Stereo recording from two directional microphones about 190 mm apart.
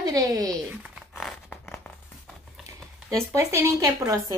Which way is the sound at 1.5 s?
10° left (ahead or behind).